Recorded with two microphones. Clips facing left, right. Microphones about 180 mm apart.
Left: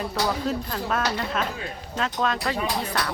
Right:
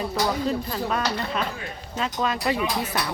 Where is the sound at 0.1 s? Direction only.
5° right (ahead or behind).